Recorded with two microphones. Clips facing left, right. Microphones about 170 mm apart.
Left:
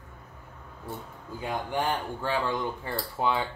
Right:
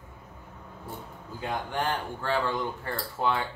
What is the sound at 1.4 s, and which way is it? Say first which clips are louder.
Speech: left 1 dB; 15° left (ahead or behind).